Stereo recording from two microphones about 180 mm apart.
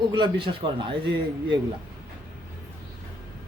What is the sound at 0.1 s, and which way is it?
Speech, 25° right (ahead or behind).